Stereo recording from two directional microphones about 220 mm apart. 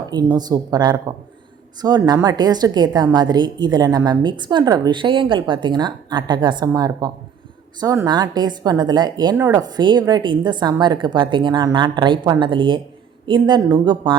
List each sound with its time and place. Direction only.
0.1 s a woman's voice: 20° right (ahead or behind)